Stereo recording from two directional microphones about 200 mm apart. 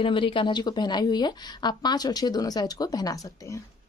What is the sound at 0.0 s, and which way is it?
Speech, 25° left (ahead or behind).